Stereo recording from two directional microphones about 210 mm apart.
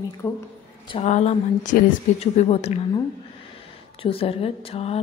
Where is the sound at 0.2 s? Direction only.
15° left (ahead or behind).